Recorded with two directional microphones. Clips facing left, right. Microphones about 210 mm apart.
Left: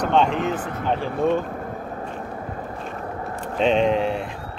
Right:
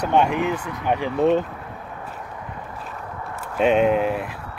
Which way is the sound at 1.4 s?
45° left (ahead or behind).